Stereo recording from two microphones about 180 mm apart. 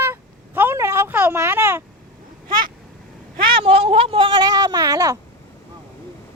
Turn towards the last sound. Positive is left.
turn(degrees=-20)  # may be behind; listen again after turning